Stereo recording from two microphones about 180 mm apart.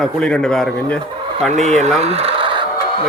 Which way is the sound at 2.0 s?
35° right (ahead or behind).